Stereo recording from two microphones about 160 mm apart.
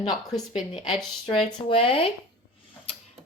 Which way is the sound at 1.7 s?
35° left (ahead or behind).